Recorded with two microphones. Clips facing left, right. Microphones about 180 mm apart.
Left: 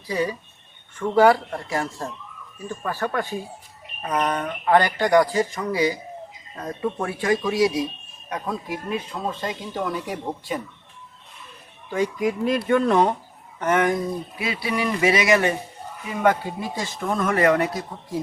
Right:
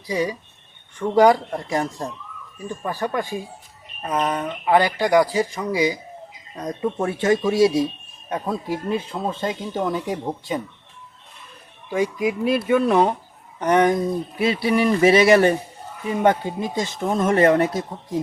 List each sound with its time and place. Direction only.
0.1 s speech: 15° right (ahead or behind)
11.9 s speech: 10° right (ahead or behind); by 17.7 s 25° right (ahead or behind)